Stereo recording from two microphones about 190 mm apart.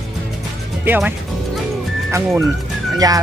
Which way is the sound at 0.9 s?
10° right (ahead or behind).